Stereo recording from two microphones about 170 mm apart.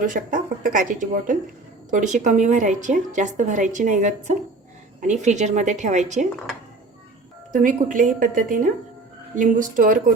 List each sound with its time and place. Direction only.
0.0 s a woman's voice: 50° right (ahead or behind)
7.5 s a woman's voice: 50° right (ahead or behind)